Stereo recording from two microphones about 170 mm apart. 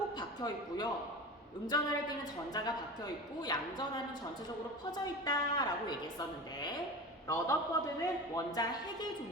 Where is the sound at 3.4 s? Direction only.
25° left (ahead or behind).